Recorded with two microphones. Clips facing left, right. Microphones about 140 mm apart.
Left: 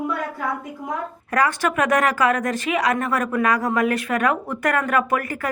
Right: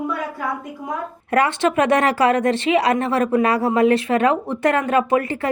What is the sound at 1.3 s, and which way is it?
A woman's voice, 25° right (ahead or behind).